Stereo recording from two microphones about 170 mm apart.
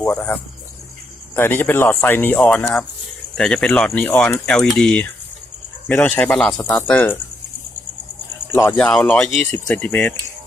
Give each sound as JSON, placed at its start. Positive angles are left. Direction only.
{"t": 0.0, "sound": "speech", "side_deg": 15}
{"t": 1.4, "sound": "speech", "side_deg": 10}
{"t": 6.5, "sound": "speech", "side_deg": 20}
{"t": 8.4, "sound": "speech", "side_deg": 15}
{"t": 8.7, "sound": "speech", "side_deg": 5}